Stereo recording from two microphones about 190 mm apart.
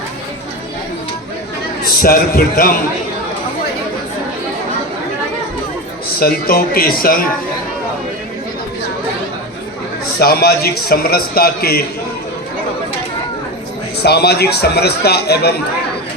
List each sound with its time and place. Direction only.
2.0 s speech: 50° left (ahead or behind)
6.1 s speech: 55° left (ahead or behind)
10.2 s a man's voice: 55° left (ahead or behind)
14.0 s a man's voice: 60° left (ahead or behind)